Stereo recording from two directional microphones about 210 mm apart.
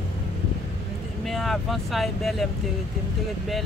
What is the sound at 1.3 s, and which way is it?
Speech, centre (ahead or behind).